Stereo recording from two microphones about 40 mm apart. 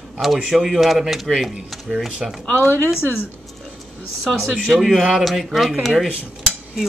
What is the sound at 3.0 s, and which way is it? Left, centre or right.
Speech, left.